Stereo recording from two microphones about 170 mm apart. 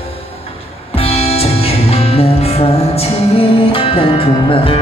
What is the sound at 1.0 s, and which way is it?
Music, 35° left (ahead or behind).